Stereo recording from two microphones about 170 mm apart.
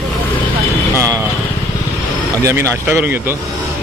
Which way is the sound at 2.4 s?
15° right (ahead or behind).